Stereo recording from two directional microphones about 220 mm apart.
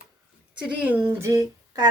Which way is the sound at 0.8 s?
10° right (ahead or behind).